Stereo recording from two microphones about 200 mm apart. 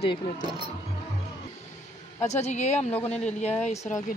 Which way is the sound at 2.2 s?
35° left (ahead or behind).